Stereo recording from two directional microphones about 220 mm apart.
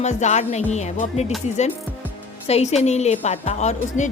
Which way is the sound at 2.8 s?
30° left (ahead or behind).